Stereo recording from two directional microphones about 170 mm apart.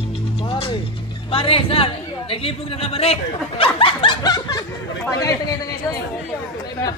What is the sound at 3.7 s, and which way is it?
Snicker, 30° left (ahead or behind).